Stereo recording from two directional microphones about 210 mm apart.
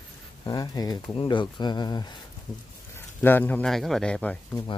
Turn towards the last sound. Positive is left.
turn(degrees=5)  # may be behind; listen again after turning